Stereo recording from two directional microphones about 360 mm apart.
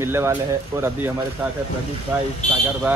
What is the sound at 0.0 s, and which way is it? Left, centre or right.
Speech, centre.